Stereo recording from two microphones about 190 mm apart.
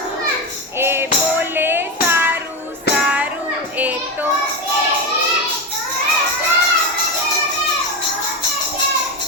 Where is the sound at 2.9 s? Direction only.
60° left (ahead or behind).